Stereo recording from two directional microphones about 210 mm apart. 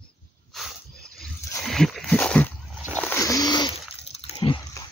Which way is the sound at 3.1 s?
15° left (ahead or behind).